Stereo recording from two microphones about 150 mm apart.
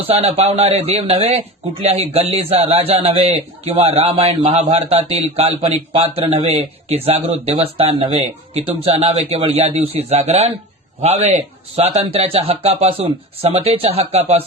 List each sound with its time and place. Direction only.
0.1 s a man's voice: 45° right (ahead or behind)